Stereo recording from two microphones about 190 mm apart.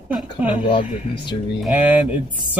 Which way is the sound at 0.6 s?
25° left (ahead or behind).